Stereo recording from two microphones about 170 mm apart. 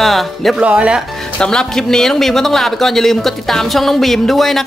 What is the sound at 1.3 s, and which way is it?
Speech, 5° left (ahead or behind).